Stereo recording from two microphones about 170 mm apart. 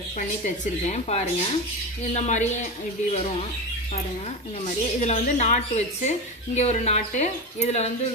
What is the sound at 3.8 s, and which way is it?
Speech, 40° left (ahead or behind).